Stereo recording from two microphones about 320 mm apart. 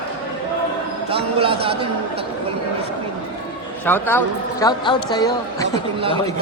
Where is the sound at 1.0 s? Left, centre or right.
Centre.